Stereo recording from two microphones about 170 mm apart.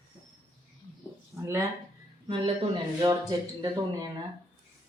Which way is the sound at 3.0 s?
25° right (ahead or behind).